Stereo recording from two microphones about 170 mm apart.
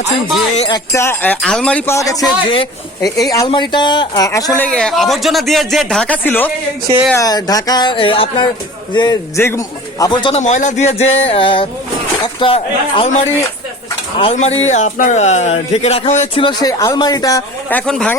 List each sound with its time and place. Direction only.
0.7 s speech: 15° left (ahead or behind)
2.0 s speech: 20° left (ahead or behind)
4.6 s speech: 5° left (ahead or behind)
7.2 s speech: 20° left (ahead or behind)
10.4 s a man's voice: 45° left (ahead or behind); by 17.4 s 20° left (ahead or behind)
17.7 s speech: 5° left (ahead or behind)